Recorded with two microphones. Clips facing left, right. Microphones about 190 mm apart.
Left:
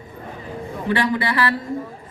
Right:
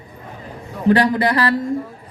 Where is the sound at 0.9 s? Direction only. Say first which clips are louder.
Right 6 dB; 40° right (ahead or behind).